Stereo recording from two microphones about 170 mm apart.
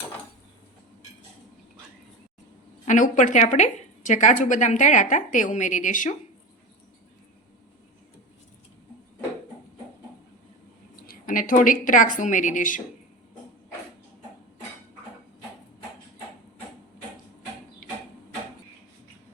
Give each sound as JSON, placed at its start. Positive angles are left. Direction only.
{"t": 2.8, "sound": "a woman's voice", "side_deg": 45}
{"t": 10.9, "sound": "a woman's voice", "side_deg": 60}